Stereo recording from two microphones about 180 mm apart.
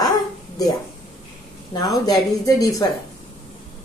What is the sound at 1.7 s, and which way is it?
Speech, 20° left (ahead or behind).